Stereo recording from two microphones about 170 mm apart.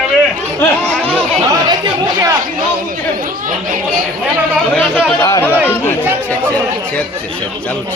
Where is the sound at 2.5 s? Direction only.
55° right (ahead or behind).